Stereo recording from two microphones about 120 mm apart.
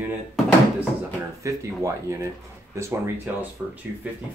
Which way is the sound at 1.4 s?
25° right (ahead or behind).